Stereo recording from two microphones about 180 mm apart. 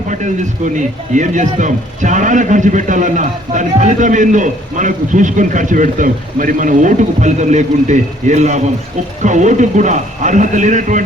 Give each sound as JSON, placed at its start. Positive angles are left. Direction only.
{"t": 0.1, "sound": "a man's voice", "side_deg": -45}